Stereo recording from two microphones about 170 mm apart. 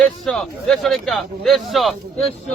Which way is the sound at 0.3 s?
Centre (ahead or behind).